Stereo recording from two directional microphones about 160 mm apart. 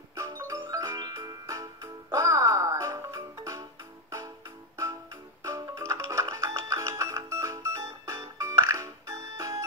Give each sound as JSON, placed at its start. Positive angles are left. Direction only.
{"t": 0.1, "sound": "music", "side_deg": -20}
{"t": 5.4, "sound": "music", "side_deg": -20}